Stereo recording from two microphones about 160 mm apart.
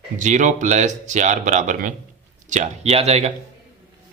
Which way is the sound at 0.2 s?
50° right (ahead or behind).